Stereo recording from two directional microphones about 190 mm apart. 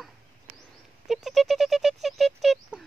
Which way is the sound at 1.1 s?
Centre (ahead or behind).